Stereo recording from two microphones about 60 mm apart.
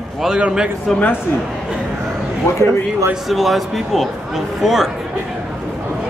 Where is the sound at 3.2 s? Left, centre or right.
Centre.